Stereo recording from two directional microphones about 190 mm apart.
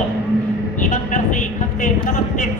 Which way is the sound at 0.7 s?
45° left (ahead or behind).